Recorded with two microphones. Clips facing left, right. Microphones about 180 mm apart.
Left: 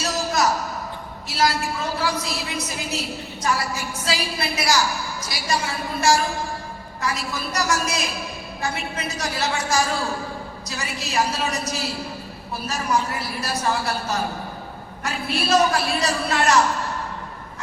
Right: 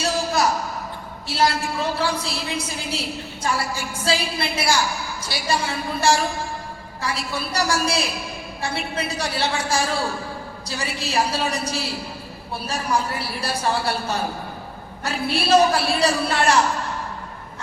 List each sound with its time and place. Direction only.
0.0 s a sound: 30° right (ahead or behind)
1.3 s a woman's voice: 30° right (ahead or behind)
4.0 s a woman's voice: 30° right (ahead or behind)